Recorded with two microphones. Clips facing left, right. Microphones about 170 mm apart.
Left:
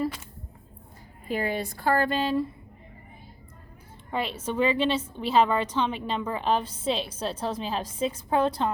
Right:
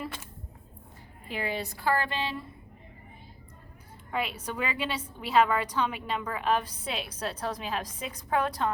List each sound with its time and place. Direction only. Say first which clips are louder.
1.3 s a woman's voice: left 5 dB; 45° left (ahead or behind)
4.1 s a woman's voice: left 3 dB; 30° left (ahead or behind)